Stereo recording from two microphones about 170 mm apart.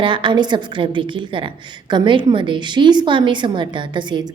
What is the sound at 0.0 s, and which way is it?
A woman's voice, 30° right (ahead or behind).